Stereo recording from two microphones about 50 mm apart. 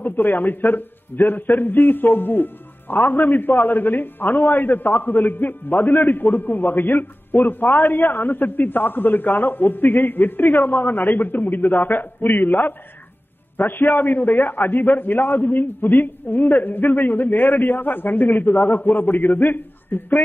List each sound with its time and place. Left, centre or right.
0.0 s a man's voice: left